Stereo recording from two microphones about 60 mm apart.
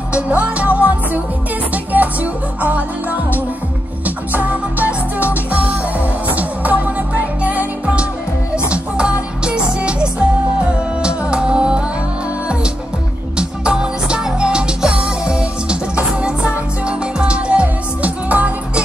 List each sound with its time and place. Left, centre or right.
0.1 s music: right
13.4 s music: centre